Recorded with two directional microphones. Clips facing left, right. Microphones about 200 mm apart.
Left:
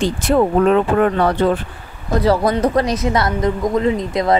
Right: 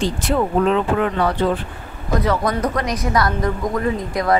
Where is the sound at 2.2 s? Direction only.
30° left (ahead or behind).